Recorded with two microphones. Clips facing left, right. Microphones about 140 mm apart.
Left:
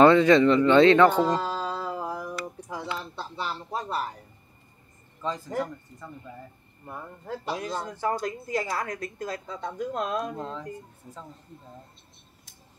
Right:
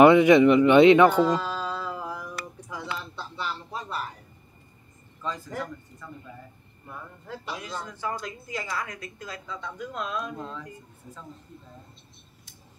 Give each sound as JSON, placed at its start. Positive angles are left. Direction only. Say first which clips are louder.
{"t": 0.0, "sound": "speech", "louder": "right 2 dB", "side_deg": -15}
{"t": 1.4, "sound": "mantra", "louder": "left 1 dB", "side_deg": 35}
{"t": 2.4, "sound": "a sound", "louder": "left 3 dB", "side_deg": 30}
{"t": 3.0, "sound": "speech", "louder": "left 1 dB", "side_deg": 35}
{"t": 5.2, "sound": "speech", "louder": "left 3 dB", "side_deg": 30}